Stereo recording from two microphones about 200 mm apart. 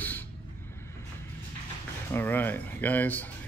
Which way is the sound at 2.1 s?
10° left (ahead or behind).